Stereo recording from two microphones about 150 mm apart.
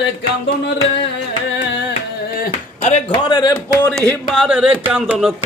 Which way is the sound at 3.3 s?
25° left (ahead or behind).